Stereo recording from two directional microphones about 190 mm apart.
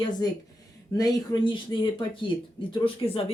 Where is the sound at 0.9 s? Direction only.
20° left (ahead or behind).